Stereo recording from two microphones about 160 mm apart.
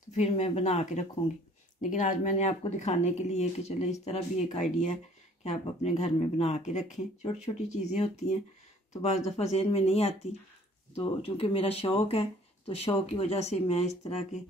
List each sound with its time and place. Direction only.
0.1 s speech: 45° left (ahead or behind)